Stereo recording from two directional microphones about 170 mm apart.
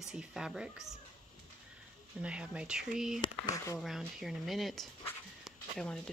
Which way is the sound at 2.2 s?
5° right (ahead or behind).